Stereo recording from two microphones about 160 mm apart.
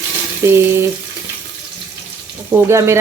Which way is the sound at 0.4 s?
15° right (ahead or behind).